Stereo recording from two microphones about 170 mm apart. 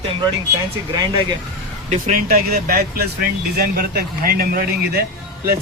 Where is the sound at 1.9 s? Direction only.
45° right (ahead or behind).